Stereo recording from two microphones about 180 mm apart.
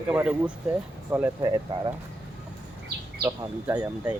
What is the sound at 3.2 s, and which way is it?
Speech, 10° right (ahead or behind).